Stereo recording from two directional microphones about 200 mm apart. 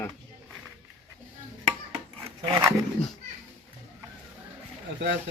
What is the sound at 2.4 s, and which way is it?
Speech, 25° right (ahead or behind).